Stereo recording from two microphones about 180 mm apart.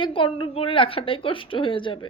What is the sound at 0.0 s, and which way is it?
A woman's voice, 30° left (ahead or behind).